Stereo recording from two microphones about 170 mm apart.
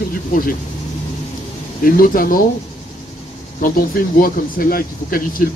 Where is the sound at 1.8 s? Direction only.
55° left (ahead or behind).